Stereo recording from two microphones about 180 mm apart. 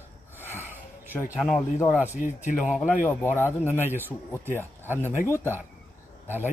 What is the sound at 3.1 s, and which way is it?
Speech, 10° left (ahead or behind).